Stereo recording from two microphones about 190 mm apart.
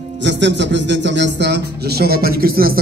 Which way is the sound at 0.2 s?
70° right (ahead or behind).